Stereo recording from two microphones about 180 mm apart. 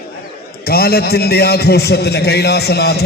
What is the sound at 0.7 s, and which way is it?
A man's voice, 60° left (ahead or behind).